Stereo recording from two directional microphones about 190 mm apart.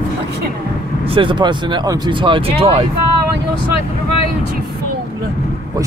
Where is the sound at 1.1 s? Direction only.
25° right (ahead or behind).